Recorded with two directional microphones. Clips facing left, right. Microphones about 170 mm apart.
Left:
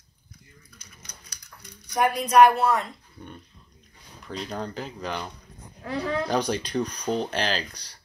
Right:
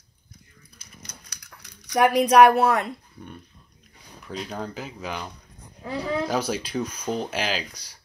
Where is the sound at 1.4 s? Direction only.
85° right; by 2.9 s 65° right (ahead or behind).